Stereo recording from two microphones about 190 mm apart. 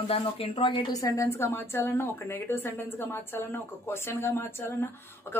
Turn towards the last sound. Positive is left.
turn(degrees=10)  # may be behind; listen again after turning